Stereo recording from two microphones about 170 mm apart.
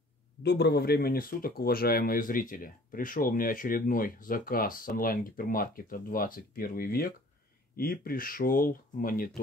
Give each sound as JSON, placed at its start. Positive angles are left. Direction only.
{"t": 0.4, "sound": "speech", "side_deg": 80}